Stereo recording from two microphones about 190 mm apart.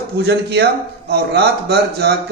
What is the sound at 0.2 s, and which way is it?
A man's voice, 60° right (ahead or behind).